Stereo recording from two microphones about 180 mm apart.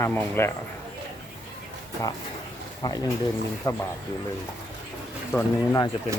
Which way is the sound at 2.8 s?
20° left (ahead or behind).